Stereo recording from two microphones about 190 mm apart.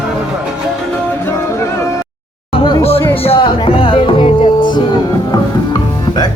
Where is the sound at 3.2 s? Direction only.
30° left (ahead or behind).